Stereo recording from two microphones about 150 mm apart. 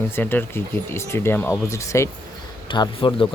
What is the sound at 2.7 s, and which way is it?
Speech, 35° left (ahead or behind).